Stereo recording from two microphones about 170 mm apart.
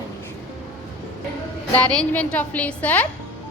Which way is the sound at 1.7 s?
5° left (ahead or behind).